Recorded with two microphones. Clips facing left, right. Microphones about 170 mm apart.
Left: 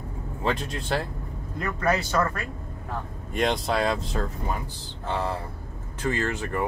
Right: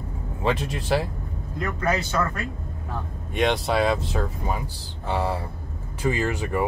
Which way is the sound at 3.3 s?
Centre (ahead or behind).